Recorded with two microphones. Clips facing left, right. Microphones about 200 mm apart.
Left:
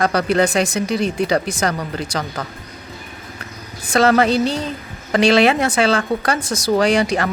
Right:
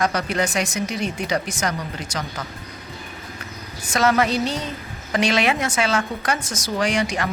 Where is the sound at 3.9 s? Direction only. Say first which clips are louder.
Left 5 dB; 30° left (ahead or behind).